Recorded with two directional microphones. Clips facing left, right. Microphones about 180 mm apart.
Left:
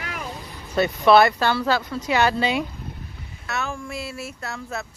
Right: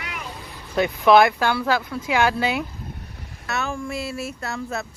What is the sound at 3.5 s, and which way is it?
Speech, 5° left (ahead or behind).